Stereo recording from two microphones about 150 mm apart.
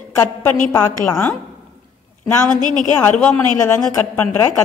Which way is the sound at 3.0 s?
10° left (ahead or behind).